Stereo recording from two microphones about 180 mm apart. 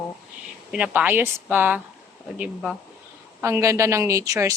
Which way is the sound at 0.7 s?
5° right (ahead or behind).